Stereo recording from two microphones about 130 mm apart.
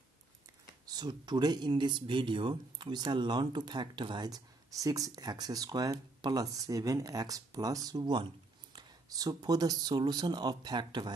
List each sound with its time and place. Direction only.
0.8 s speech: 35° right (ahead or behind)